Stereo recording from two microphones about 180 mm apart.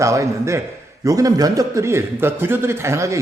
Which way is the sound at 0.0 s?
15° right (ahead or behind).